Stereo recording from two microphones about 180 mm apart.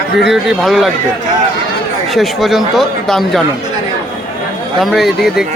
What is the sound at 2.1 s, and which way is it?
Speech, centre (ahead or behind).